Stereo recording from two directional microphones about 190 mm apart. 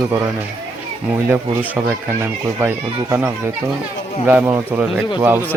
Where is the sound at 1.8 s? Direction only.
10° right (ahead or behind).